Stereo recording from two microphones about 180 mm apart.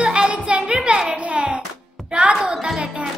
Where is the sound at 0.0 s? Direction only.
5° right (ahead or behind).